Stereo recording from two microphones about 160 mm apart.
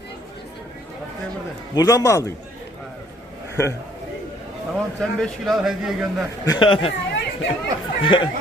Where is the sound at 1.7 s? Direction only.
20° left (ahead or behind).